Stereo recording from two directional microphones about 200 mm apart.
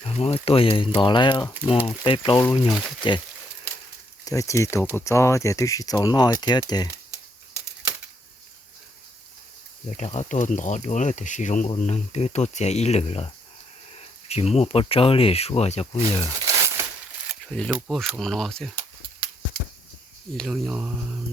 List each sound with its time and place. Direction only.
0.0 s speech: 30° left (ahead or behind)
4.3 s speech: 15° left (ahead or behind)
10.0 s speech: 35° left (ahead or behind)
14.3 s speech: 30° left (ahead or behind)
16.4 s a sound: 15° right (ahead or behind)
17.4 s keys jangling: 5° left (ahead or behind)
17.7 s speech: 5° right (ahead or behind)
20.3 s speech: centre (ahead or behind)